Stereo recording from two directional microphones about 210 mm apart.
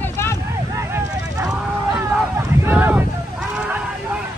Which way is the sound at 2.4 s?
15° right (ahead or behind).